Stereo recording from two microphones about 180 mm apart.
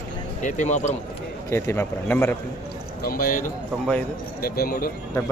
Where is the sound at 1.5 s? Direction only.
15° left (ahead or behind).